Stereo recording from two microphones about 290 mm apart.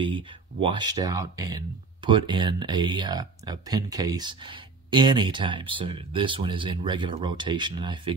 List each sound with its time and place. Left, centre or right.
0.0 s speech: centre